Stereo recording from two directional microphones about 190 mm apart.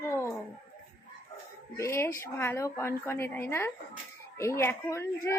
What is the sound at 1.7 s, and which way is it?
Speech, 15° left (ahead or behind).